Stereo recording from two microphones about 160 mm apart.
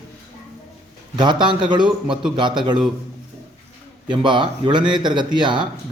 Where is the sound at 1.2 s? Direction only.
30° right (ahead or behind).